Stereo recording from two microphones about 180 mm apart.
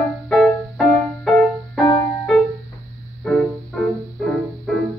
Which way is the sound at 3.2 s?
5° left (ahead or behind).